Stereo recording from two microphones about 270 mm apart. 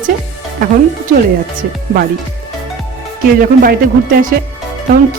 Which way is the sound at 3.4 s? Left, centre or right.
Right.